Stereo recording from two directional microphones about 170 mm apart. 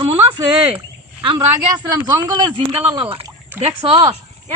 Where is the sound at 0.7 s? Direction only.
30° right (ahead or behind).